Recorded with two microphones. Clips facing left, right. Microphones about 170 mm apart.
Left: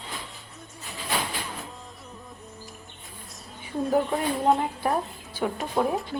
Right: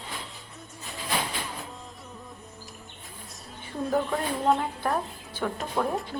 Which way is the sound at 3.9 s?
20° left (ahead or behind).